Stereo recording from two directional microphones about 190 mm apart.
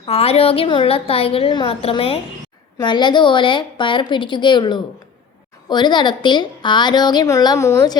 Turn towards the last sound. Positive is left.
turn(degrees=15)  # may be behind; listen again after turning